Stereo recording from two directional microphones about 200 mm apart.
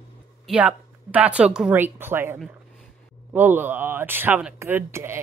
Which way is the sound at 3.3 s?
10° right (ahead or behind).